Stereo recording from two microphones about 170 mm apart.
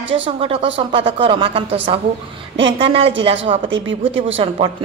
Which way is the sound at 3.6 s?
90° right.